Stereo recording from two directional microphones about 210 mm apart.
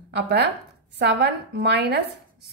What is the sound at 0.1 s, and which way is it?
A woman's voice, 50° right (ahead or behind).